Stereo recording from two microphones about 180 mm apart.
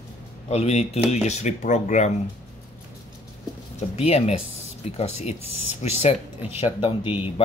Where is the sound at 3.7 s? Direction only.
35° left (ahead or behind).